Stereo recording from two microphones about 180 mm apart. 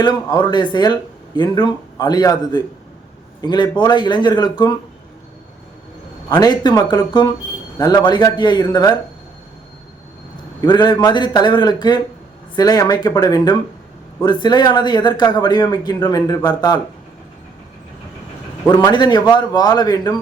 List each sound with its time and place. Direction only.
0.0 s speech: 25° left (ahead or behind)
6.2 s speech: 20° left (ahead or behind)
10.7 s speech: 25° left (ahead or behind)
18.7 s speech: 20° left (ahead or behind)